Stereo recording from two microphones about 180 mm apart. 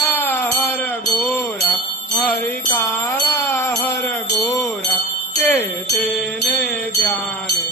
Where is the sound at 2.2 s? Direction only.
10° left (ahead or behind).